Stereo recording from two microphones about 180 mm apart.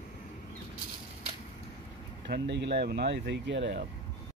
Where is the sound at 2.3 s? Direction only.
75° right (ahead or behind).